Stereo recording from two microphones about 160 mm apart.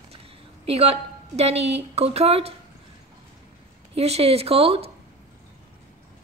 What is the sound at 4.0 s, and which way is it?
Speech, 40° right (ahead or behind).